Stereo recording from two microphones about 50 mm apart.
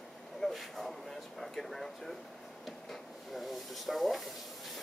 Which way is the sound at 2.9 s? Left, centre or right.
Centre.